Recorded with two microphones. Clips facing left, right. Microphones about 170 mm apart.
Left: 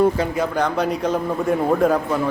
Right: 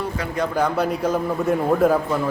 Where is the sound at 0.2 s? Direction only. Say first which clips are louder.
Left 6 dB; 25° left (ahead or behind).